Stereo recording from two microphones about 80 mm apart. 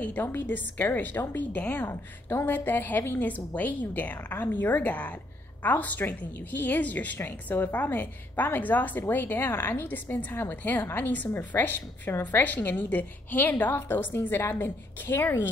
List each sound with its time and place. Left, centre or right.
0.0 s a woman's voice: left
1.9 s a woman's voice: left